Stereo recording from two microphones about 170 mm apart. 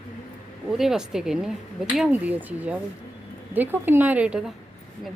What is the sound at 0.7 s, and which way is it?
Speech, centre (ahead or behind).